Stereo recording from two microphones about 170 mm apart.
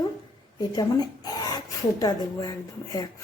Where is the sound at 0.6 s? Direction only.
20° left (ahead or behind).